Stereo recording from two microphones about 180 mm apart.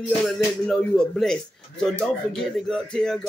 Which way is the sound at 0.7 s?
5° left (ahead or behind).